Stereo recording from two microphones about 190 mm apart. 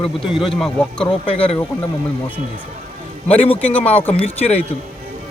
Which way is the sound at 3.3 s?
30° left (ahead or behind).